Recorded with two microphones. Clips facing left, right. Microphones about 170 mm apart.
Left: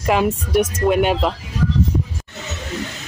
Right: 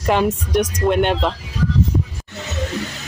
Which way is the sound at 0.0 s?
5° left (ahead or behind).